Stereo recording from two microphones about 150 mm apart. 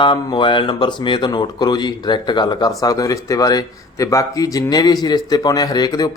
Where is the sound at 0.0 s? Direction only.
30° left (ahead or behind).